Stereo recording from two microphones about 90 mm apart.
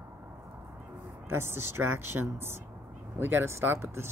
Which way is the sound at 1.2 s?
25° right (ahead or behind).